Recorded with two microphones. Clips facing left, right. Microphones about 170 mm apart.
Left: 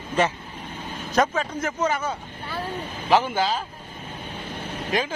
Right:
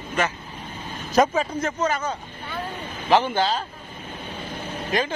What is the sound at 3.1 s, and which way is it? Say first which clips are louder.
Speech: right 1 dB; 5° left (ahead or behind).